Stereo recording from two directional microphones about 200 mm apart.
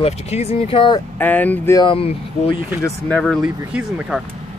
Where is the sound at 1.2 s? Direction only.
10° left (ahead or behind).